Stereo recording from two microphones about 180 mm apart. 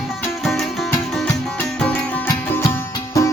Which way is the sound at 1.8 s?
10° left (ahead or behind).